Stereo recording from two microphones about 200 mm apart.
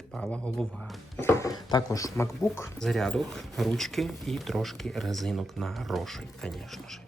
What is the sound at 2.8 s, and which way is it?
Speech, centre (ahead or behind).